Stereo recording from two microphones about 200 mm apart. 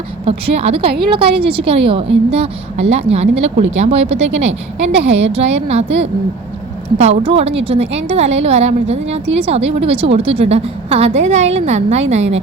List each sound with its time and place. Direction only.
0.3 s a woman's voice: 30° right (ahead or behind)